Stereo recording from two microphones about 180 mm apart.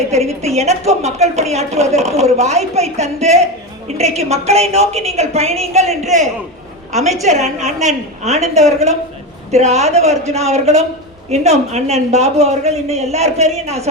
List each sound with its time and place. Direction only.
0.1 s a woman's voice: 35° right (ahead or behind)